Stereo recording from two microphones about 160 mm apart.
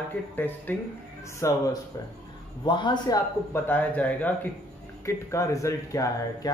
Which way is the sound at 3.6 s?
10° left (ahead or behind).